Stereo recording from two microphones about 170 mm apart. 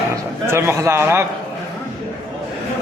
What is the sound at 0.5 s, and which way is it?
Speech, 15° right (ahead or behind).